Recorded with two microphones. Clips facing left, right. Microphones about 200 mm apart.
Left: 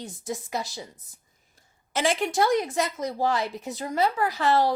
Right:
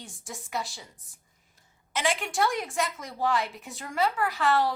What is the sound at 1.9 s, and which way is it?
Speech, 40° left (ahead or behind).